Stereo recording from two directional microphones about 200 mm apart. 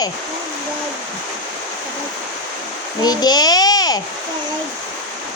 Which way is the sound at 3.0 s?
20° left (ahead or behind).